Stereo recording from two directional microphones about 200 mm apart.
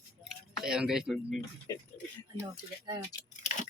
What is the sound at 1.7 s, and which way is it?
Speech, 15° left (ahead or behind).